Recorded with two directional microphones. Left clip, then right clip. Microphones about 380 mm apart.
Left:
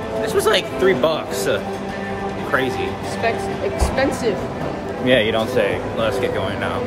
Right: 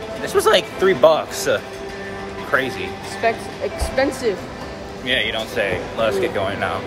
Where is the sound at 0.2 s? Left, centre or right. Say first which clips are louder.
Right 2 dB; centre.